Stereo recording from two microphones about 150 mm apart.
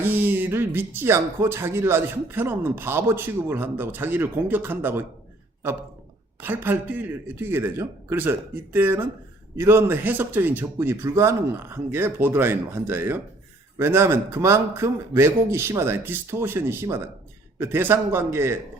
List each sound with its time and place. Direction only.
0.0 s speech: 15° right (ahead or behind)
6.4 s speech: 15° right (ahead or behind)